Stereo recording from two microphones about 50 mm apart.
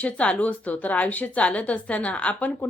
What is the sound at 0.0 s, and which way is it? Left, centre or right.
A woman's voice, left.